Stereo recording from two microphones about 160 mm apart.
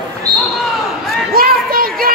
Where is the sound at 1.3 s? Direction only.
65° right (ahead or behind).